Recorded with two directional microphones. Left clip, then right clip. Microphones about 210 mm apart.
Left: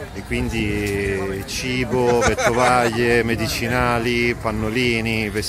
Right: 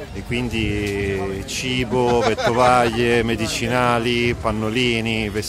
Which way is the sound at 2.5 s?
5° right (ahead or behind).